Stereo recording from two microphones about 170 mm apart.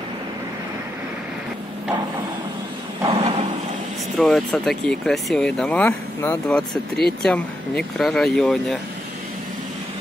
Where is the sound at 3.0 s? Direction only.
35° right (ahead or behind).